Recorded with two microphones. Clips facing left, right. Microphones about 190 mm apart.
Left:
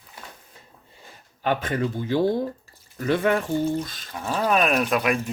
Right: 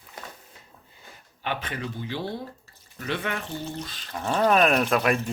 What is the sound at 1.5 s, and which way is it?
Speech, 45° left (ahead or behind).